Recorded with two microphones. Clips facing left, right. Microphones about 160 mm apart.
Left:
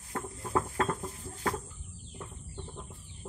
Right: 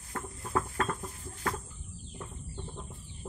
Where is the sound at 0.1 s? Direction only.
20° left (ahead or behind).